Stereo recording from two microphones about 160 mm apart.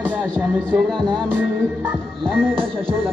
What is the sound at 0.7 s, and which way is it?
Music, 5° left (ahead or behind).